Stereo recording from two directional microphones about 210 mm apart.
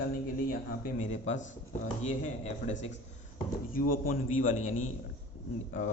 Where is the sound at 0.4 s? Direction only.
40° left (ahead or behind).